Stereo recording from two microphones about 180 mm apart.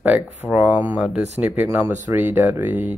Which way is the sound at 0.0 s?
5° right (ahead or behind).